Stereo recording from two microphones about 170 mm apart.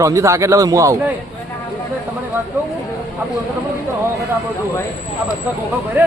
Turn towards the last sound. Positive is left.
turn(degrees=-10)  # may be behind; listen again after turning